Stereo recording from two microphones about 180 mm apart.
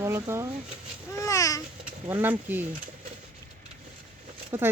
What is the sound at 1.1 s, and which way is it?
Babbling, 15° left (ahead or behind).